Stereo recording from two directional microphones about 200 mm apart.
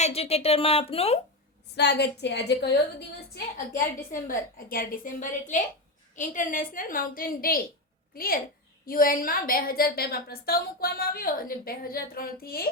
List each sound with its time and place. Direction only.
0.0 s speech: 30° left (ahead or behind)
1.7 s a woman's voice: 60° left (ahead or behind)
4.1 s a woman's voice: 45° left (ahead or behind)